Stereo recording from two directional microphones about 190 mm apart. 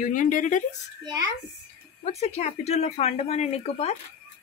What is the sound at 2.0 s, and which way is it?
Speech, 35° left (ahead or behind).